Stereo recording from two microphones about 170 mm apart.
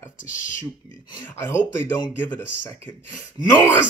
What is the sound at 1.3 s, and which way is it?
Speech, 15° left (ahead or behind).